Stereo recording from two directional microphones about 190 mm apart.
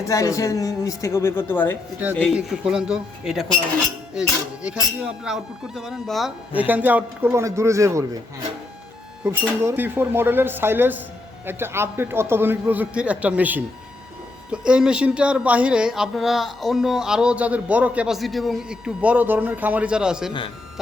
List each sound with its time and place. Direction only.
0.1 s a man's voice: 15° left (ahead or behind)
2.1 s speech: centre (ahead or behind); by 8.0 s 15° right (ahead or behind)
9.2 s a man's voice: 5° right (ahead or behind)